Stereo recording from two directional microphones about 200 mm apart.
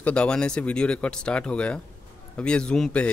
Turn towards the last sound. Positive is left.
turn(degrees=5)  # may be behind; listen again after turning